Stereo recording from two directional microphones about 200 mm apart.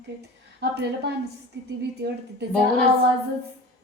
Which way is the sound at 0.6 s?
55° right (ahead or behind).